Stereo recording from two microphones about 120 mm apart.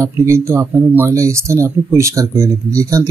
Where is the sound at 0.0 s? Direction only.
25° right (ahead or behind).